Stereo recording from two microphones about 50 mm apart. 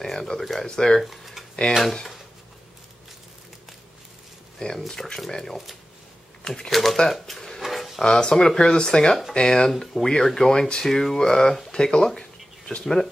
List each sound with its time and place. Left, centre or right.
0.0 s speech: centre
1.0 s a sound: centre
4.6 s speech: centre
6.7 s speech: centre
7.6 s a sound: centre
8.0 s speech: centre
9.7 s speech: centre